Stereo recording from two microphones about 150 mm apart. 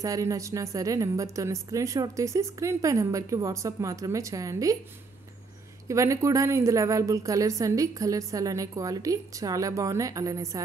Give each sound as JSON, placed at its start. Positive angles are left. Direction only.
{"t": 0.0, "sound": "a woman's voice", "side_deg": -20}
{"t": 5.9, "sound": "a woman's voice", "side_deg": -20}